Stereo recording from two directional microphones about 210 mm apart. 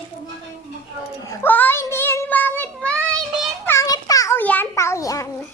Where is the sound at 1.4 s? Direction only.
10° left (ahead or behind).